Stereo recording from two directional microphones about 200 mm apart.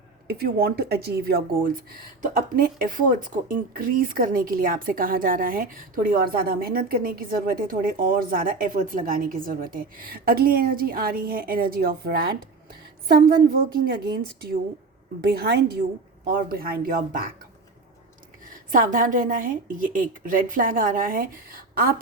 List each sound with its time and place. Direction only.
0.3 s a woman's voice: 50° right (ahead or behind)
15.3 s a woman's voice: 50° right (ahead or behind)
18.7 s a woman's voice: 40° right (ahead or behind)